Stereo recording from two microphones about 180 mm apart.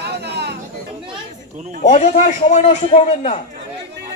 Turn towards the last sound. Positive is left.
turn(degrees=35)  # may be behind; listen again after turning